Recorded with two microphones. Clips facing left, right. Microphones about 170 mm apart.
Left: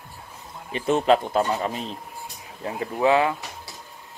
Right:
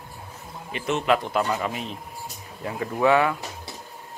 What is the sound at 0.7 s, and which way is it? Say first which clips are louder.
Speech: left 4 dB; 35° left (ahead or behind).